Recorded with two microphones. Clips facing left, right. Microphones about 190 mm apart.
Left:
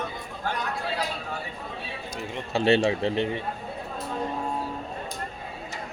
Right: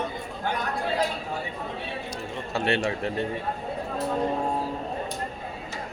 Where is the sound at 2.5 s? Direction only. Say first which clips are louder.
Left 5 dB; 25° left (ahead or behind).